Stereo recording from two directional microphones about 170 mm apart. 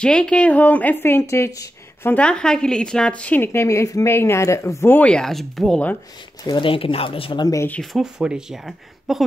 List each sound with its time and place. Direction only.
0.0 s a woman's voice: 5° left (ahead or behind)
2.1 s a woman's voice: 5° left (ahead or behind)
6.4 s speech: 30° left (ahead or behind)
7.8 s speech: centre (ahead or behind)